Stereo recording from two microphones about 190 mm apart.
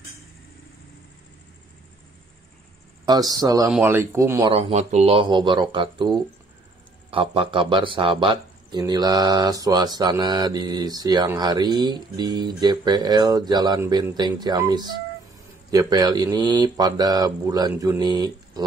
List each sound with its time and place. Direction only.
3.1 s speech: 20° right (ahead or behind)
4.5 s speech: 30° right (ahead or behind)